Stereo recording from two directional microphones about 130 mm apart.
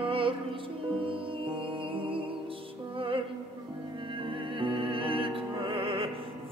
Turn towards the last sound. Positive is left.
turn(degrees=-45)  # may be behind; listen again after turning